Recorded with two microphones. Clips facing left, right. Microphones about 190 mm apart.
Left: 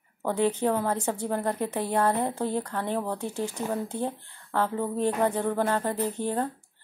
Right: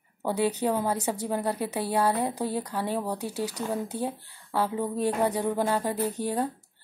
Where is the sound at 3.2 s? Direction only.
35° right (ahead or behind).